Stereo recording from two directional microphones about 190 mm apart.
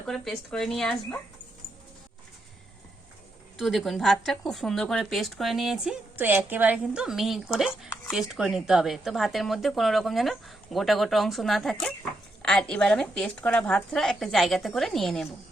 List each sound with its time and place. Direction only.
0.1 s a woman's voice: centre (ahead or behind)
3.6 s a woman's voice: centre (ahead or behind)